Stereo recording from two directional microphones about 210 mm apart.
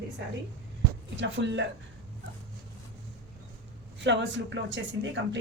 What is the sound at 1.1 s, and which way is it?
Speech, 60° right (ahead or behind).